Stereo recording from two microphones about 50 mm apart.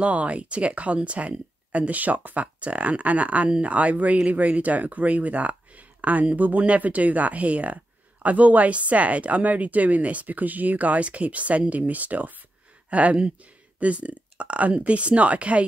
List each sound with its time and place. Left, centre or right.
0.0 s speech: right